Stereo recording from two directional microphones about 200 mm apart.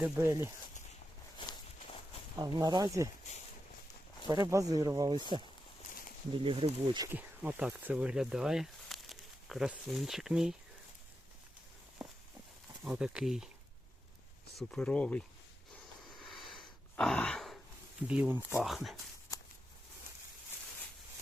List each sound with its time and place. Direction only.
0.0 s speech: 15° right (ahead or behind)
2.4 s speech: 20° right (ahead or behind)
4.3 s speech: 15° right (ahead or behind)
6.3 s speech: 25° right (ahead or behind)
7.1 s speech: 10° right (ahead or behind)
12.8 s speech: 5° right (ahead or behind)
14.7 s speech: 5° left (ahead or behind)
15.7 s a sound: centre (ahead or behind)
18.1 s speech: 10° right (ahead or behind)